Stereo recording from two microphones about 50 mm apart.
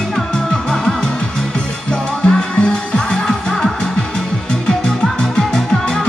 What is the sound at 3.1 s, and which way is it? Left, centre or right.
Music, centre.